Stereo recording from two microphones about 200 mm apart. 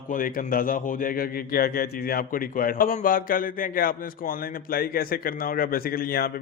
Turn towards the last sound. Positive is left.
turn(degrees=50)  # may be behind; listen again after turning